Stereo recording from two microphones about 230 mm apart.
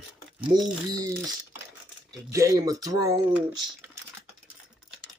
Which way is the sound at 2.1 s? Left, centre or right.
Centre.